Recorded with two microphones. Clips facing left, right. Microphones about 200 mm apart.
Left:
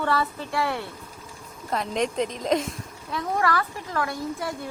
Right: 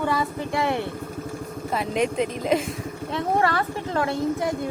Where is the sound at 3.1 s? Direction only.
25° right (ahead or behind).